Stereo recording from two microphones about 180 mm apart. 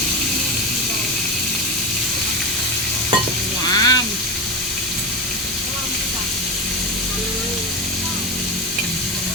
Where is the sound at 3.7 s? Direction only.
20° left (ahead or behind).